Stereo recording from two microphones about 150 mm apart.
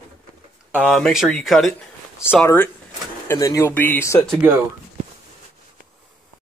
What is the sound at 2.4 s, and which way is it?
Speech, 10° left (ahead or behind).